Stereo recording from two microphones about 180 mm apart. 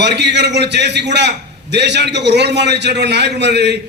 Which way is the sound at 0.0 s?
70° right (ahead or behind).